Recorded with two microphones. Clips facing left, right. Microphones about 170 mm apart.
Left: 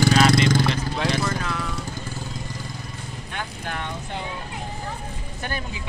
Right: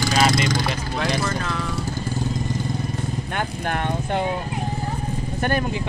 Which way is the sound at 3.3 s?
55° right (ahead or behind).